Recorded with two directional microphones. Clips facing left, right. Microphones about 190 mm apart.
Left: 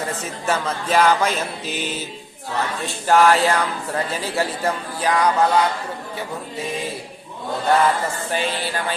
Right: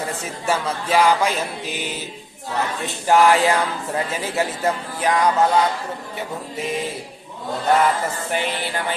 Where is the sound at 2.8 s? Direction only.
20° right (ahead or behind).